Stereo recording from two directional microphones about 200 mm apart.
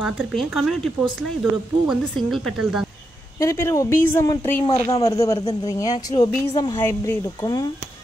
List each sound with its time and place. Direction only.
0.0 s speech: centre (ahead or behind)
3.3 s a woman's voice: 15° left (ahead or behind)